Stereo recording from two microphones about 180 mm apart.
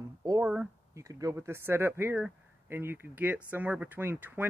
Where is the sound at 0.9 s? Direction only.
20° right (ahead or behind).